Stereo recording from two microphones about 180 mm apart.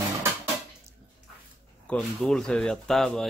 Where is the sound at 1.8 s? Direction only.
5° left (ahead or behind).